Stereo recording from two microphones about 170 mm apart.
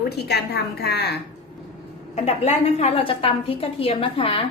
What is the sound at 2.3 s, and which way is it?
A woman's voice, 40° left (ahead or behind).